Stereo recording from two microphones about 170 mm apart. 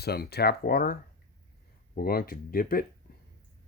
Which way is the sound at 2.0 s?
60° left (ahead or behind).